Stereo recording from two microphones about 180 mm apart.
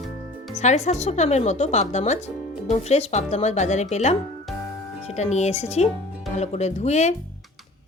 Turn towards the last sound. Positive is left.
turn(degrees=40)  # may be behind; listen again after turning